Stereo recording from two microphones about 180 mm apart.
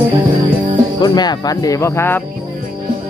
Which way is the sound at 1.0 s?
20° left (ahead or behind).